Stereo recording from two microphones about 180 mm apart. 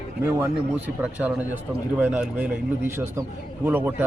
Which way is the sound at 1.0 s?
10° right (ahead or behind).